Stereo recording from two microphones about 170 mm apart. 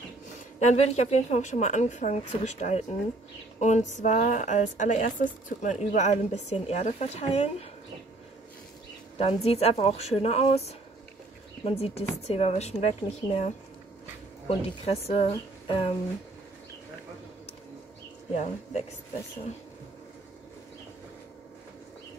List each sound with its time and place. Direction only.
0.6 s a woman's voice: 40° left (ahead or behind)
9.2 s speech: 35° left (ahead or behind)
11.6 s speech: 35° left (ahead or behind)
14.5 s speech: 35° left (ahead or behind)
18.3 s speech: 40° left (ahead or behind)